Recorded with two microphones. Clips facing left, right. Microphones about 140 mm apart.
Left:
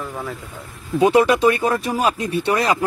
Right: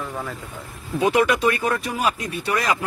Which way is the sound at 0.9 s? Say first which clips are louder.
Left 4 dB; 30° left (ahead or behind).